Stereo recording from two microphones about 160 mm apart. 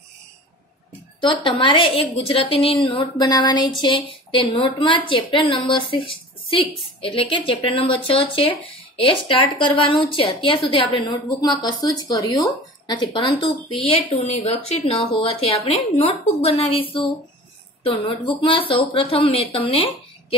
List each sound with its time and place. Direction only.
1.2 s a woman's voice: 30° left (ahead or behind)
17.8 s speech: 35° left (ahead or behind)